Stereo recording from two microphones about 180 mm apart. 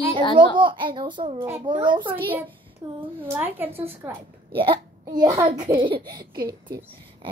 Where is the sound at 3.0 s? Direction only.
10° right (ahead or behind).